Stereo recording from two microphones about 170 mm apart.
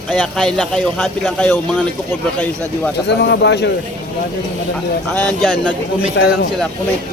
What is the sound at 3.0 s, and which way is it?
Speech, 90° left.